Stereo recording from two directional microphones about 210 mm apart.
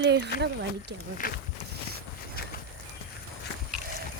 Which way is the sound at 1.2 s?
40° left (ahead or behind).